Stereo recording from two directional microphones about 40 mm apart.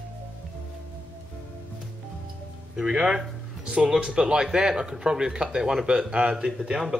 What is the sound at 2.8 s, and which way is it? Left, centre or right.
Speech, centre.